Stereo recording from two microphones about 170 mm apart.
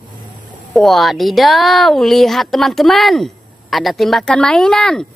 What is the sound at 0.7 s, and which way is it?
Speech, centre (ahead or behind).